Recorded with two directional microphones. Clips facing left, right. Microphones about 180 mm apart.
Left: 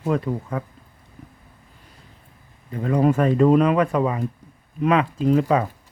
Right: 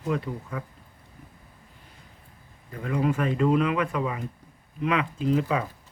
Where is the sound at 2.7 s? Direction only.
35° left (ahead or behind).